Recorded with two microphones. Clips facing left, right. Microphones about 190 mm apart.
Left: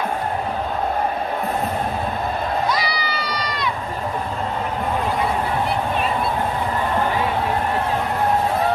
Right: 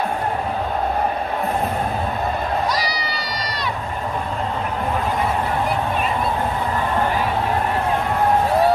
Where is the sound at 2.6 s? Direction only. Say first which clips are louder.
Even; 40° right (ahead or behind).